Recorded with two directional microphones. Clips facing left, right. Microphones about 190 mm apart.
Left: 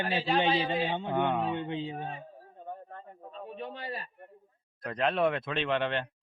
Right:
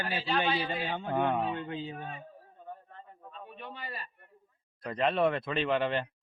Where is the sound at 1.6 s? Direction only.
25° left (ahead or behind).